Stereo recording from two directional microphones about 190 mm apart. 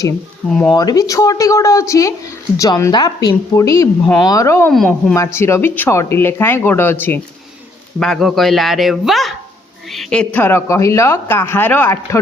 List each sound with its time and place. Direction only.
0.7 s speech: 20° left (ahead or behind)
4.7 s a man's voice: centre (ahead or behind)
5.1 s a man's voice: 15° left (ahead or behind)